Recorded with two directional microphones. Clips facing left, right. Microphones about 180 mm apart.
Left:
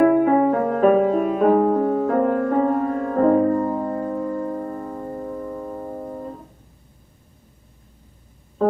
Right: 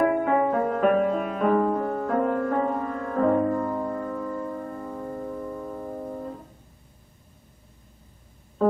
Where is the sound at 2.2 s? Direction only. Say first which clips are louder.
Left 5 dB; 40° left (ahead or behind).